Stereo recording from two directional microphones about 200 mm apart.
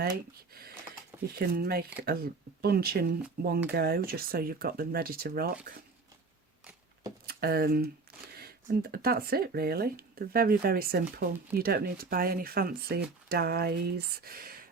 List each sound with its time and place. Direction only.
1.4 s speech: 50° right (ahead or behind)
7.3 s speech: 50° right (ahead or behind)